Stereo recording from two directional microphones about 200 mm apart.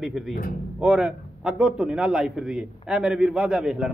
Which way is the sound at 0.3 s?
45° left (ahead or behind).